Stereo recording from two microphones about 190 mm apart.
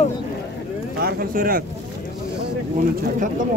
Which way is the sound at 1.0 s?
55° right (ahead or behind).